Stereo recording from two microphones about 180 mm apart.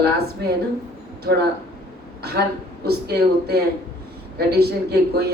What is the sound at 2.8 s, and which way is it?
Speech, 60° right (ahead or behind).